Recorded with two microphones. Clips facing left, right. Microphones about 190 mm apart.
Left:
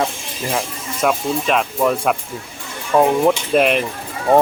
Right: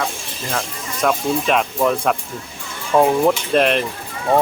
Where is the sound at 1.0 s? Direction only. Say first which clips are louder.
Even; centre (ahead or behind).